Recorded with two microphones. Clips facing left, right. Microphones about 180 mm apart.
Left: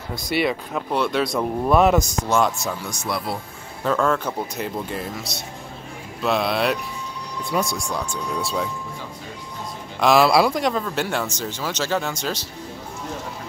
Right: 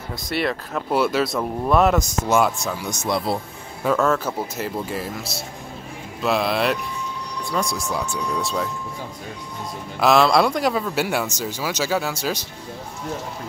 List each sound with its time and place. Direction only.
0.1 s speech: centre (ahead or behind)
2.8 s speech: 20° right (ahead or behind)
3.8 s speech: 5° right (ahead or behind)
6.2 s speech: centre (ahead or behind)
9.9 s speech: centre (ahead or behind)